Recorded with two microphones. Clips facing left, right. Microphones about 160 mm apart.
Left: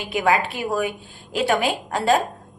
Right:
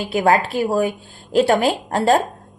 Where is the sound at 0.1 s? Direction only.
35° right (ahead or behind).